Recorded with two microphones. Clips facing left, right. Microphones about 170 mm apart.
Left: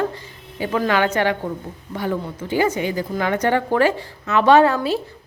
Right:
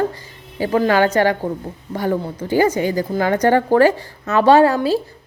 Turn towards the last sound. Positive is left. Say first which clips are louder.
# right 2 dB
turn(degrees=-35)  # may be behind; listen again after turning